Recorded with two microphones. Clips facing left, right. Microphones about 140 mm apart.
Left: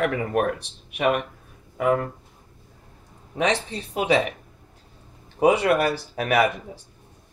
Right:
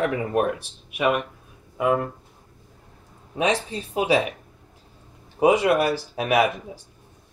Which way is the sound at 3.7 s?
5° right (ahead or behind).